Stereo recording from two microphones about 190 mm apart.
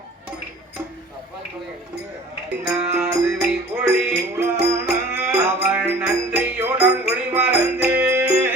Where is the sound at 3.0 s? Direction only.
15° right (ahead or behind).